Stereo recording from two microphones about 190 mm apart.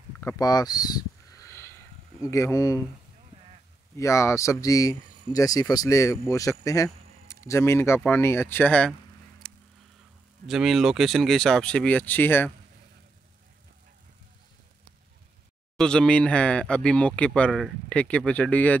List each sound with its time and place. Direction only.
0.2 s a sound: 15° left (ahead or behind)
2.3 s speech: 15° left (ahead or behind)
3.9 s speech: 15° left (ahead or behind)
9.4 s a sound: centre (ahead or behind)
10.4 s speech: centre (ahead or behind)
15.8 s speech: 5° left (ahead or behind)